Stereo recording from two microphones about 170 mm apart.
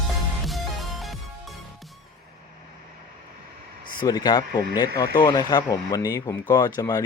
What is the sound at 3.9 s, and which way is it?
Speech, 25° left (ahead or behind).